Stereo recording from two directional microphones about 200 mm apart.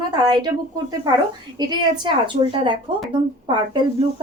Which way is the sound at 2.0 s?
25° right (ahead or behind).